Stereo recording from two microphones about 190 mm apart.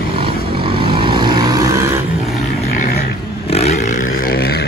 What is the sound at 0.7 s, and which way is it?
Vehicle, 25° right (ahead or behind).